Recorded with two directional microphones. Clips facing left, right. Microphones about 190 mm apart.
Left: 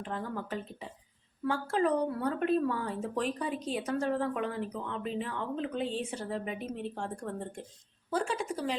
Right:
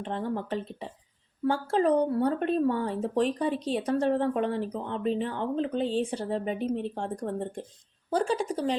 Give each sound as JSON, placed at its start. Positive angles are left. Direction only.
{"t": 0.0, "sound": "speech", "side_deg": -30}